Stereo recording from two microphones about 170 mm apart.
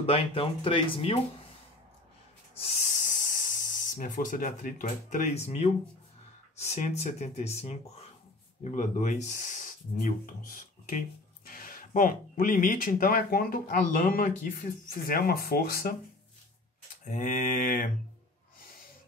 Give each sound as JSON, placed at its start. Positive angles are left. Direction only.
{"t": 0.0, "sound": "speech", "side_deg": 35}
{"t": 2.8, "sound": "speech", "side_deg": 50}
{"t": 6.5, "sound": "speech", "side_deg": 40}
{"t": 8.7, "sound": "speech", "side_deg": 50}
{"t": 17.1, "sound": "mantra", "side_deg": 50}